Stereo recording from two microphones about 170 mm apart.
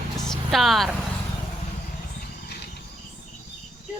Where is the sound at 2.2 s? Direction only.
70° left (ahead or behind).